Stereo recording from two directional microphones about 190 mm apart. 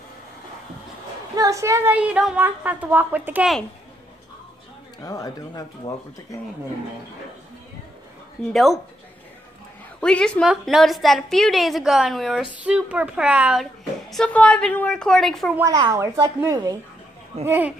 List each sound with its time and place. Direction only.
1.3 s a woman's voice: 15° right (ahead or behind)
5.0 s speech: 20° left (ahead or behind)
8.4 s a woman's voice: 5° left (ahead or behind)
9.9 s a woman's voice: 5° left (ahead or behind)
14.1 s a woman's voice: 5° left (ahead or behind)
15.5 s a woman's voice: 15° right (ahead or behind)